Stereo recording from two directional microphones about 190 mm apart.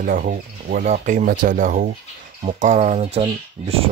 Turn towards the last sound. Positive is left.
turn(degrees=-30)  # may be behind; listen again after turning